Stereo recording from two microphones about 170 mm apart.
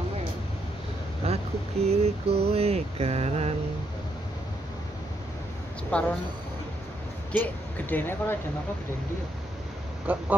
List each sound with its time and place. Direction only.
1.2 s a sound: 35° right (ahead or behind)
1.9 s mantra: 35° right (ahead or behind)
5.9 s speech: 10° left (ahead or behind)
7.3 s speech: 10° left (ahead or behind)
10.1 s duck: 10° right (ahead or behind)